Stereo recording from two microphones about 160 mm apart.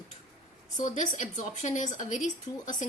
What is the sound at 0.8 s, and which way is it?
A woman's voice, 55° left (ahead or behind).